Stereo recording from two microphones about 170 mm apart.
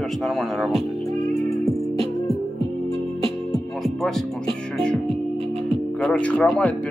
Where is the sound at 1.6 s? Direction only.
35° right (ahead or behind).